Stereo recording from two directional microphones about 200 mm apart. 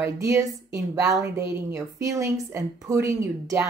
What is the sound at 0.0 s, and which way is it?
Speech, 15° right (ahead or behind).